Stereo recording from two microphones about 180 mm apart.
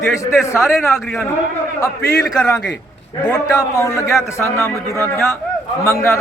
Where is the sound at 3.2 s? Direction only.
5° left (ahead or behind).